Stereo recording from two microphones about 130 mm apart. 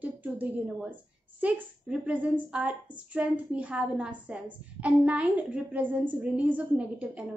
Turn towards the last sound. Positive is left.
turn(degrees=-10)  # may be behind; listen again after turning